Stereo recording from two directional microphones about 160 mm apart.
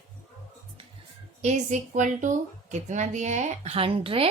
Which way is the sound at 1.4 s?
45° right (ahead or behind).